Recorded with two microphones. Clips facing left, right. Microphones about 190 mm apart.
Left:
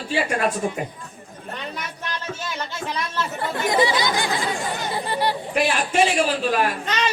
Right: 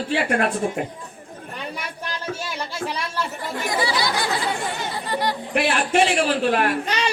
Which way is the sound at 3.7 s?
20° left (ahead or behind).